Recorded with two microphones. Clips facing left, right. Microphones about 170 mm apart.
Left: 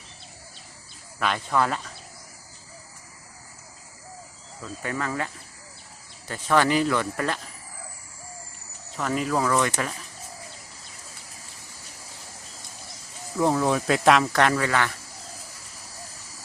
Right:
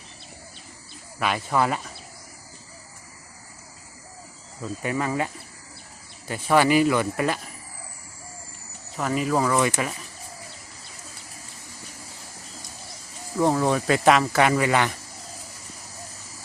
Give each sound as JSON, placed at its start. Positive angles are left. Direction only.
{"t": 1.2, "sound": "speech", "side_deg": -10}
{"t": 4.6, "sound": "speech", "side_deg": -15}
{"t": 9.0, "sound": "speech", "side_deg": -5}
{"t": 13.3, "sound": "speech", "side_deg": 0}